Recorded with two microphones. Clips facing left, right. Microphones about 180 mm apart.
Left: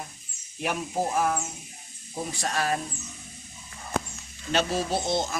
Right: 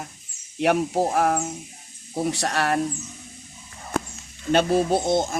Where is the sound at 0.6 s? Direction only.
70° right (ahead or behind).